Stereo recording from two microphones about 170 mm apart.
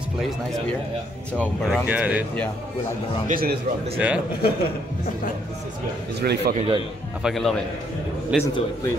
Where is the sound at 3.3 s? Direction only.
60° right (ahead or behind).